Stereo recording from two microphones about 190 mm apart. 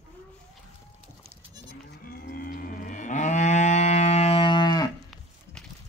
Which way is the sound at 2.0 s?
50° left (ahead or behind).